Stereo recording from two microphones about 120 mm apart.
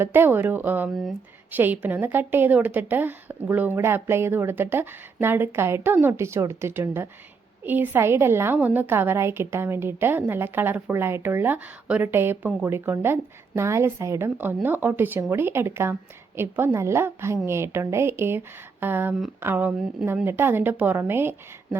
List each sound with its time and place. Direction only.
0.0 s a woman's voice: 15° right (ahead or behind)